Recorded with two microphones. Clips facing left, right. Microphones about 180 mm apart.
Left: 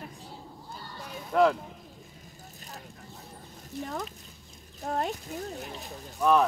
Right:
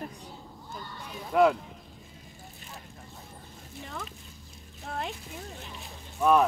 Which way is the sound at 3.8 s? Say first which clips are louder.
Left 6 dB; 40° left (ahead or behind).